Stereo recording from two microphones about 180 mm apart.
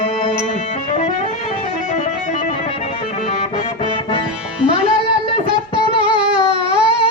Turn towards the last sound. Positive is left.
turn(degrees=-30)  # may be behind; listen again after turning